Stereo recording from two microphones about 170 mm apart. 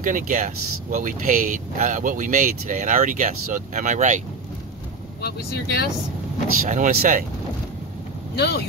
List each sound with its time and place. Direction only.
0.0 s speech: 50° right (ahead or behind)
5.2 s speech: 70° left (ahead or behind)
6.6 s speech: 55° right (ahead or behind)
8.4 s speech: 75° left (ahead or behind)